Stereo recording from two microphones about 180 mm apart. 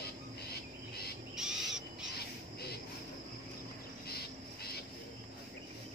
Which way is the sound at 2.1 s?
60° left (ahead or behind).